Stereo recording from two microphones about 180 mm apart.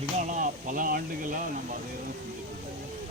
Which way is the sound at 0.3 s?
45° right (ahead or behind).